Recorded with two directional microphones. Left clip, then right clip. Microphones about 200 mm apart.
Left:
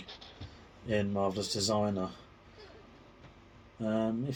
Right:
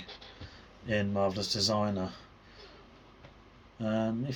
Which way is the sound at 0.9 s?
35° right (ahead or behind).